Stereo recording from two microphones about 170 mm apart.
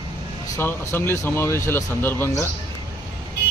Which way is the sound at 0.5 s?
15° left (ahead or behind).